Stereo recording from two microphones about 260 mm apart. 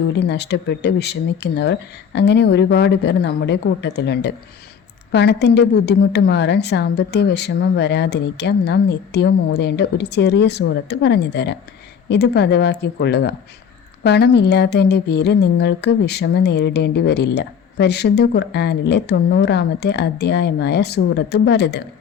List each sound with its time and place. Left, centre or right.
0.2 s speech: left